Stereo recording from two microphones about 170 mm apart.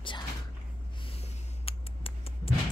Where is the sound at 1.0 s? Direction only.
35° left (ahead or behind).